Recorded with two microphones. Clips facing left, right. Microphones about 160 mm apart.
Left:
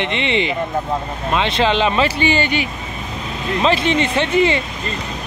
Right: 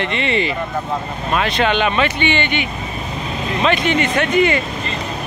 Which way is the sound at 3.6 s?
30° left (ahead or behind).